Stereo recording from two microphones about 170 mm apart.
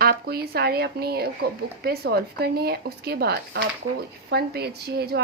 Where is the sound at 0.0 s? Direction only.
65° right (ahead or behind).